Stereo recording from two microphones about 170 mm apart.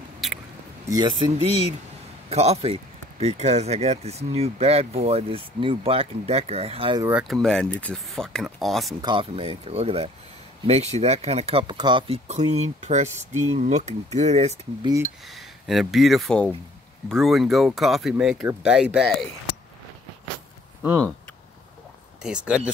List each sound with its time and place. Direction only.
0.2 s a sound: centre (ahead or behind)
0.8 s speech: 20° right (ahead or behind)
2.2 s speech: 40° right (ahead or behind)
7.0 s speech: 10° right (ahead or behind)
7.4 s speech: 5° left (ahead or behind)
9.0 s speech: 30° right (ahead or behind)
12.3 s speech: 40° right (ahead or behind)
14.8 s speech: 20° right (ahead or behind)
15.2 s speech: centre (ahead or behind)
22.2 s speech: 5° right (ahead or behind)